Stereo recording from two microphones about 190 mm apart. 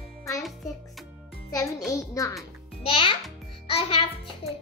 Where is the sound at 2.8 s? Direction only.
30° left (ahead or behind).